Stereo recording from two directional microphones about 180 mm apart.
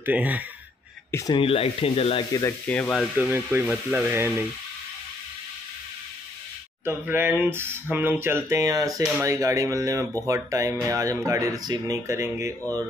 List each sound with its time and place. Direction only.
0.0 s speech: 10° right (ahead or behind)
1.1 s speech: 25° left (ahead or behind)
2.3 s speech: 15° left (ahead or behind)
3.2 s speech: 10° right (ahead or behind)
6.8 s speech: 10° right (ahead or behind)